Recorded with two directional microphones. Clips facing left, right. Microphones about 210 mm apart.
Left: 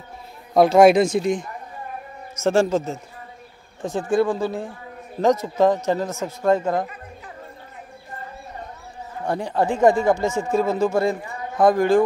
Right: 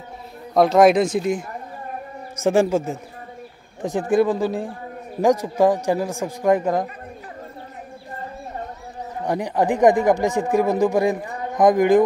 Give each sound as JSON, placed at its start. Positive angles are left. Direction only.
{"t": 0.6, "sound": "speech", "side_deg": 0}
{"t": 2.4, "sound": "speech", "side_deg": -15}
{"t": 4.1, "sound": "speech", "side_deg": -20}
{"t": 9.2, "sound": "speech", "side_deg": -15}